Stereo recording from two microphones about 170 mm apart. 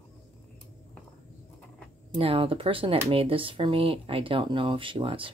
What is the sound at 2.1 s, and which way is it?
Speech, 30° right (ahead or behind).